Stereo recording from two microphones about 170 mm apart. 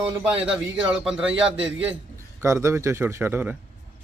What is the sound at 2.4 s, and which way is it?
Speech, 15° right (ahead or behind).